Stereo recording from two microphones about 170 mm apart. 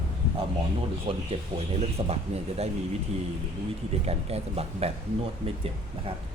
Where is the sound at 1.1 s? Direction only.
35° right (ahead or behind).